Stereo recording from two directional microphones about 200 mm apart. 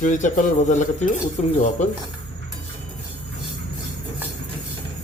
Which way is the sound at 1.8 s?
35° left (ahead or behind).